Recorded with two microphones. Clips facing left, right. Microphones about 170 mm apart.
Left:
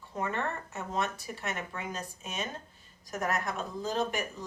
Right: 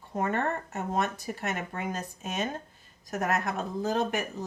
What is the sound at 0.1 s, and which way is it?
Speech, 45° right (ahead or behind).